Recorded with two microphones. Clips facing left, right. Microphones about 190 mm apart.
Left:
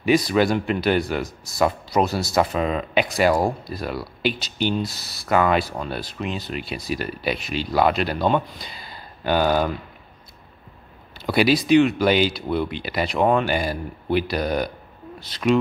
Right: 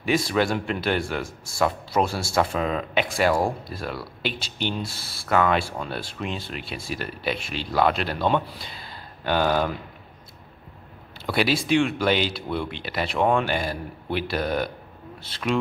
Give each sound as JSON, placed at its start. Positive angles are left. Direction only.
{"t": 0.3, "sound": "speech", "side_deg": 5}
{"t": 1.2, "sound": "speech", "side_deg": -30}
{"t": 2.3, "sound": "speech", "side_deg": 5}
{"t": 4.8, "sound": "speech", "side_deg": -30}
{"t": 5.3, "sound": "speech", "side_deg": 5}
{"t": 8.6, "sound": "a sound", "side_deg": 5}
{"t": 11.2, "sound": "speech", "side_deg": 5}